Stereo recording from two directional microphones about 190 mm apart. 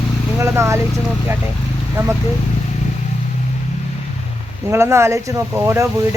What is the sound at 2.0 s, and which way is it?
Speech, 15° right (ahead or behind).